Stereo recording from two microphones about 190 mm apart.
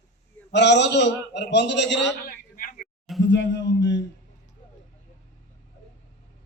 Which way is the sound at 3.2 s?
75° left (ahead or behind).